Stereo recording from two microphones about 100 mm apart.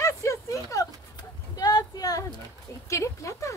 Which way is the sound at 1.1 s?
40° left (ahead or behind).